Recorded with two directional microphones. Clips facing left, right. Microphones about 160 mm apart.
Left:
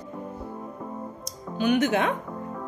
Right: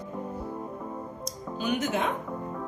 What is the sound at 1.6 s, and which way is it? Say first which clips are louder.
Speech: left 6 dB; 70° left (ahead or behind).